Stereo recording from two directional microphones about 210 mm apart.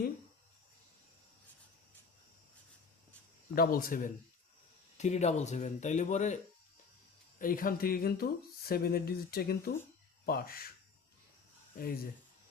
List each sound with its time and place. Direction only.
3.5 s speech: 45° left (ahead or behind)
11.8 s speech: 45° left (ahead or behind)